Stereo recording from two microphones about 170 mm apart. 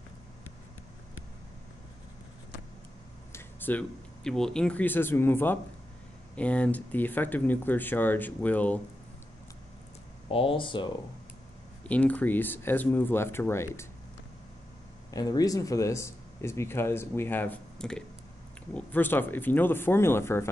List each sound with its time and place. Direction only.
3.3 s speech: 10° left (ahead or behind)
10.2 s speech: 30° left (ahead or behind)
11.9 s speech: 10° left (ahead or behind)
15.0 s speech: 20° left (ahead or behind)